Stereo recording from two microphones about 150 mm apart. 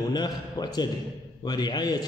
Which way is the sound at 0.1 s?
25° left (ahead or behind).